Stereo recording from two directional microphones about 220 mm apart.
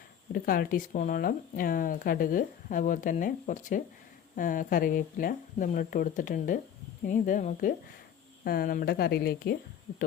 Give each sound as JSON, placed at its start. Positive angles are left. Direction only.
{"t": 0.3, "sound": "speech", "side_deg": 40}